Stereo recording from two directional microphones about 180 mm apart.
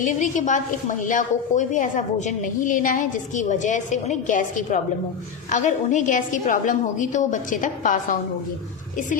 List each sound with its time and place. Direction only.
0.0 s a woman's voice: 45° left (ahead or behind)